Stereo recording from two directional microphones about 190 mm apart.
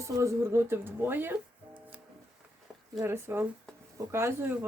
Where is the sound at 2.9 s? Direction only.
10° right (ahead or behind).